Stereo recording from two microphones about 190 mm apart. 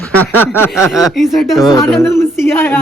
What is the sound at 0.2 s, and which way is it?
Speech, 10° left (ahead or behind).